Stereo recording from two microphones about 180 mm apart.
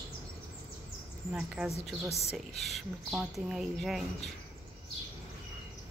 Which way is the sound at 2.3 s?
Centre (ahead or behind).